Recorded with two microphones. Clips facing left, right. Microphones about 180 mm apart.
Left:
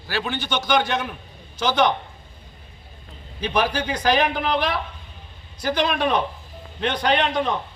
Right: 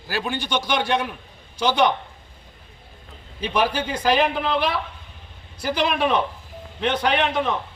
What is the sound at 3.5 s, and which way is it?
A man's voice, 5° right (ahead or behind).